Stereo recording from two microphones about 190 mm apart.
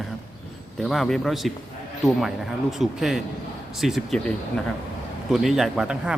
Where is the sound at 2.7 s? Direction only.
Centre (ahead or behind).